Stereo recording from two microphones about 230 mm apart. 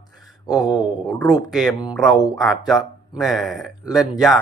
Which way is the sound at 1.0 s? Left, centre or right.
Centre.